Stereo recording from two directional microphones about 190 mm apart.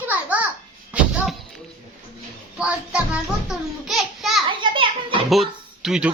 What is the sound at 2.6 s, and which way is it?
A child's voice, 5° right (ahead or behind).